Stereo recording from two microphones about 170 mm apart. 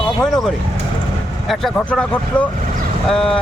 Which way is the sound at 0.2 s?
Centre (ahead or behind).